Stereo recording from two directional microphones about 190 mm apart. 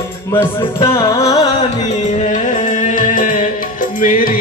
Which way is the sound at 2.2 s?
40° left (ahead or behind).